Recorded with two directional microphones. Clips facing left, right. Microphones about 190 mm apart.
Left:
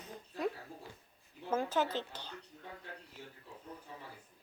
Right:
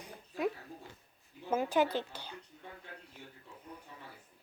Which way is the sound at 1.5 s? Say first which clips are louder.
Right 3 dB; 10° right (ahead or behind).